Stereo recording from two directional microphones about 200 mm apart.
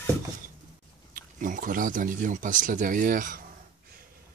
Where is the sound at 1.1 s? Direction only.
40° right (ahead or behind).